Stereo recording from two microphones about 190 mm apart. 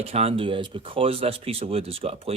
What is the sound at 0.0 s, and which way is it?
Speech, 35° right (ahead or behind).